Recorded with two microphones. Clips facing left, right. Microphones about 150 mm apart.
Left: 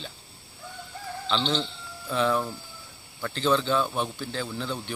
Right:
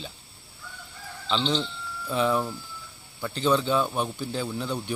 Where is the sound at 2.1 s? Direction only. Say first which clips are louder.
Even; 5° right (ahead or behind).